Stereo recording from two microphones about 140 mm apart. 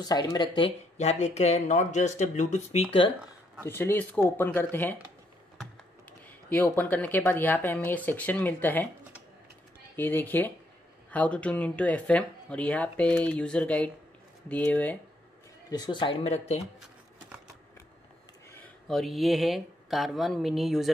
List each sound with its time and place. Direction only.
0.0 s speech: 30° left (ahead or behind)
0.7 s speech: 55° left (ahead or behind)
3.6 s speech: 15° left (ahead or behind)
9.9 s speech: 15° left (ahead or behind)
15.7 s a man's voice: 30° left (ahead or behind)
18.9 s speech: centre (ahead or behind)